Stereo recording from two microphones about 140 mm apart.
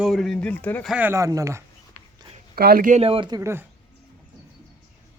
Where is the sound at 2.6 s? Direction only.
90° right.